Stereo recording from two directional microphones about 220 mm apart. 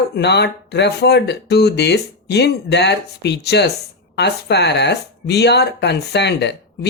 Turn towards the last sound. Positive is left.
turn(degrees=50)  # may be behind; listen again after turning